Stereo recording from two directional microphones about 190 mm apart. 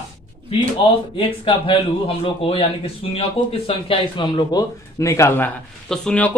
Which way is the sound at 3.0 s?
30° left (ahead or behind).